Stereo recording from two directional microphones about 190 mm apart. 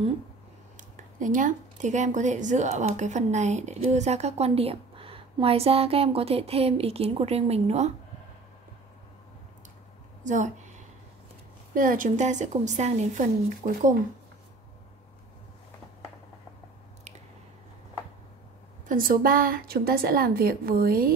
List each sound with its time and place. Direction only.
1.2 s a woman's voice: 45° right (ahead or behind)
10.2 s a woman's voice: 40° right (ahead or behind)
11.7 s a woman's voice: 45° right (ahead or behind)
18.9 s a woman's voice: 45° right (ahead or behind)